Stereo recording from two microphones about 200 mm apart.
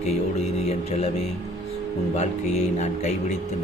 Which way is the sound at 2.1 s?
35° left (ahead or behind).